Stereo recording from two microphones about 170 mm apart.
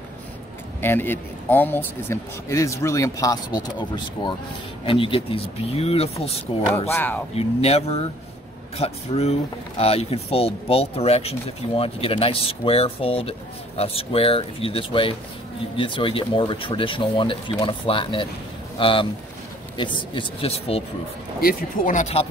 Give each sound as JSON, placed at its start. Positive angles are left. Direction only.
{"t": 0.7, "sound": "speech", "side_deg": 10}
{"t": 6.9, "sound": "speech", "side_deg": 10}
{"t": 7.3, "sound": "speech", "side_deg": 35}
{"t": 21.4, "sound": "speech", "side_deg": 60}